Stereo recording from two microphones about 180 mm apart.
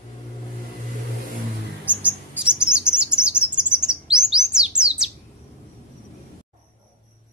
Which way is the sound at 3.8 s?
5° right (ahead or behind).